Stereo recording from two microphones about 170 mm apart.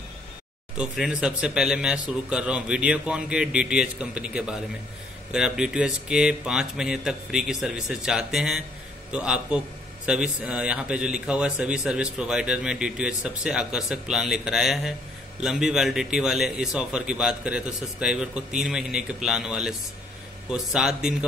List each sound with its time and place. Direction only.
0.7 s a man's voice: 5° right (ahead or behind)